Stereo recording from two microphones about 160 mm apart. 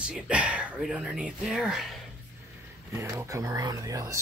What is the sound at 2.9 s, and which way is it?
Speech, 20° right (ahead or behind).